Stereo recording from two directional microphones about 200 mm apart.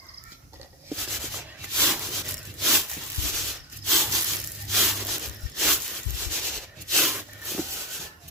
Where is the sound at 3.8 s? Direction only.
Centre (ahead or behind).